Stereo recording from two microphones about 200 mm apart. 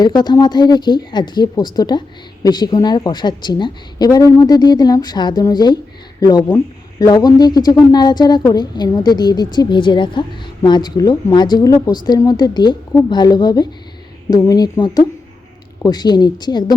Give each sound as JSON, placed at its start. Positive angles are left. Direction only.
{"t": 0.0, "sound": "a woman's voice", "side_deg": 20}